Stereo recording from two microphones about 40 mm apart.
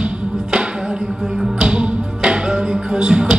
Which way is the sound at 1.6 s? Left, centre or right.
Right.